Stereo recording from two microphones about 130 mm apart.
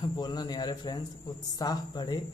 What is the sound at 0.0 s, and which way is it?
A man's voice, 30° left (ahead or behind).